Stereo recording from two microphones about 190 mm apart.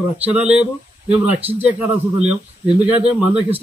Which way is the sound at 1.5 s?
10° right (ahead or behind).